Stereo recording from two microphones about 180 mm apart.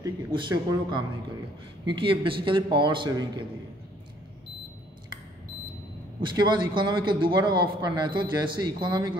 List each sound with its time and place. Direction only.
0.0 s a man's voice: 25° right (ahead or behind)
6.2 s a man's voice: 25° right (ahead or behind)